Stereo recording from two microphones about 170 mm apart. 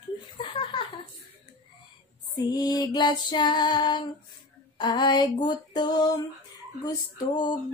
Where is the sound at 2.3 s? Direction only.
20° left (ahead or behind).